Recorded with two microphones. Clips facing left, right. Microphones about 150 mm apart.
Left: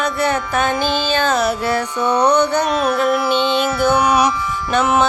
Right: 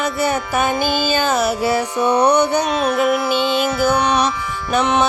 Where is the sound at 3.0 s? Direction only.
Centre (ahead or behind).